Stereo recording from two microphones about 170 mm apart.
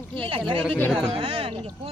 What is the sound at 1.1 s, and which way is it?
Speech, 35° right (ahead or behind).